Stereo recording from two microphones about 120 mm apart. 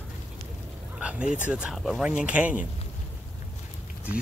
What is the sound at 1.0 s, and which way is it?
Speech, 10° right (ahead or behind).